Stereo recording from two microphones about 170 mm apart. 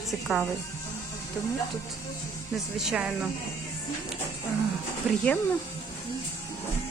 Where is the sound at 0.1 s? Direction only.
Centre (ahead or behind).